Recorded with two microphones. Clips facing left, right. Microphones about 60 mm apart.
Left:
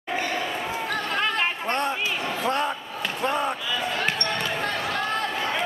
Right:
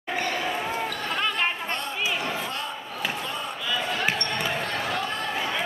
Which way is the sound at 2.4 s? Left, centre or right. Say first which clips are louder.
Left 8 dB; left.